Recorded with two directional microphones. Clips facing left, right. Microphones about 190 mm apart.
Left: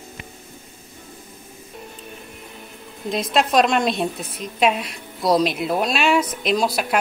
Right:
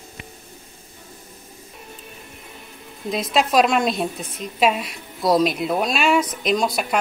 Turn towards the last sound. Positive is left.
turn(degrees=0)  # may be behind; listen again after turning